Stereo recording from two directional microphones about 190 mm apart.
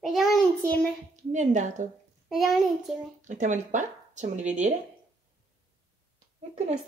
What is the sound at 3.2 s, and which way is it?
Speech, 40° right (ahead or behind).